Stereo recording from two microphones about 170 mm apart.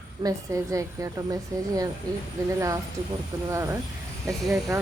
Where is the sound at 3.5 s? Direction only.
15° right (ahead or behind).